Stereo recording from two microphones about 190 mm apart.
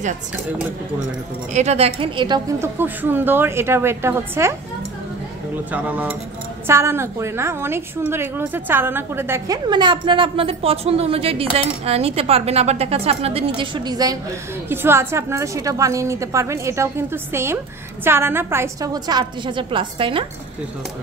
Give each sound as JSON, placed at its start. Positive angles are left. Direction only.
{"t": 1.5, "sound": "a woman's voice", "side_deg": -35}
{"t": 5.7, "sound": "a woman's voice", "side_deg": -10}
{"t": 9.7, "sound": "a woman's voice", "side_deg": -25}